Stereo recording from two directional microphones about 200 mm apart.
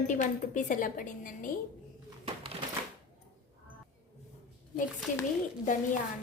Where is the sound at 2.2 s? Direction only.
30° right (ahead or behind).